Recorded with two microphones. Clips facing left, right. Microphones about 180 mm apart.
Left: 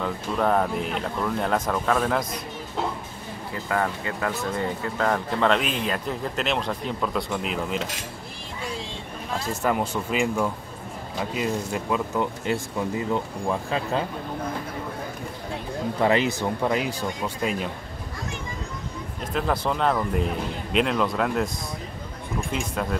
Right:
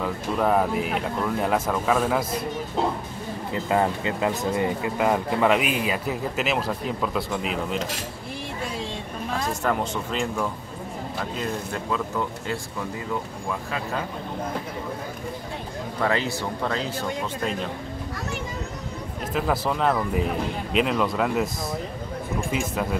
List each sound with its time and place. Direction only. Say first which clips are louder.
0.0 s speech: right 1 dB; 5° right (ahead or behind)
3.5 s speech: right 3 dB; 20° right (ahead or behind); by 7.8 s centre (ahead or behind)
9.6 s speech: left 1 dB; 10° left (ahead or behind); by 14.0 s 25° left (ahead or behind)
16.0 s speech: left 3 dB; 20° left (ahead or behind)
19.3 s speech: even; 5° right (ahead or behind)
22.5 s speech: right 1 dB; 5° right (ahead or behind)